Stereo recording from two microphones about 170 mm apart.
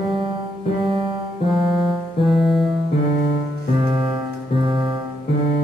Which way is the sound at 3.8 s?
30° right (ahead or behind).